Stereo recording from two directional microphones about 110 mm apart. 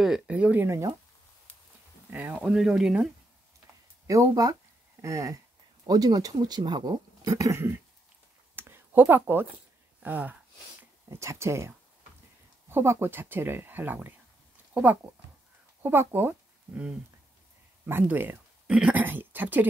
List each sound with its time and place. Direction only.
0.0 s speech: 10° right (ahead or behind)
2.1 s speech: 15° right (ahead or behind)
4.1 s speech: 30° right (ahead or behind)
8.5 s a sound: 20° right (ahead or behind)
11.1 s speech: 25° right (ahead or behind)